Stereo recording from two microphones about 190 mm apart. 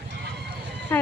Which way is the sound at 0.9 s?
10° left (ahead or behind).